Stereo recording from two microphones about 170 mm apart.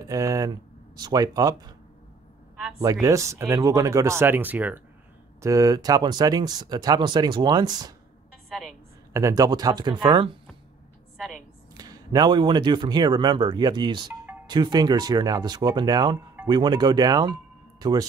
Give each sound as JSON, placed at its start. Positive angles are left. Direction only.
{"t": 0.0, "sound": "speech", "side_deg": -20}
{"t": 2.8, "sound": "speech", "side_deg": -20}
{"t": 8.5, "sound": "a woman's voice", "side_deg": 0}
{"t": 9.1, "sound": "speech", "side_deg": -20}
{"t": 11.7, "sound": "speech", "side_deg": -25}